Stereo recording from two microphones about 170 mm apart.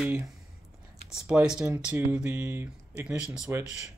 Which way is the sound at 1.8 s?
15° right (ahead or behind).